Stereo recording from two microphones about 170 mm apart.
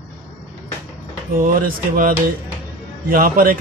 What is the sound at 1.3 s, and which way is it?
A man's voice, 55° right (ahead or behind).